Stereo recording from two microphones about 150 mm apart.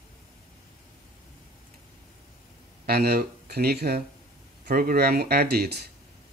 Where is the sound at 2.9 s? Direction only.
90° right.